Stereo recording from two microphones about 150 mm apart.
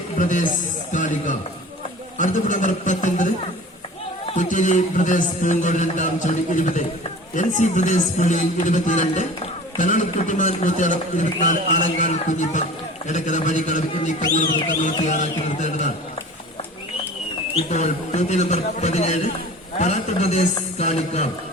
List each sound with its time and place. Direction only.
0.2 s a man's voice: 55° left (ahead or behind)
4.4 s a man's voice: 60° left (ahead or behind)
17.5 s a man's voice: 50° left (ahead or behind)